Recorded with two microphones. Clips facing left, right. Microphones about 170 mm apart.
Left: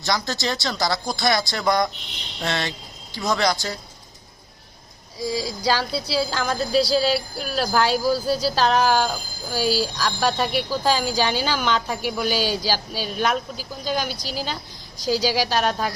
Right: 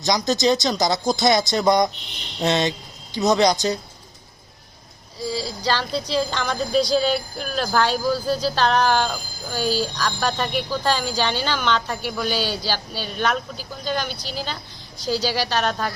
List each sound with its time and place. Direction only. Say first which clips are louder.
0.0 s speech: right 5 dB; 20° right (ahead or behind)
5.1 s speech: left 1 dB; 10° left (ahead or behind)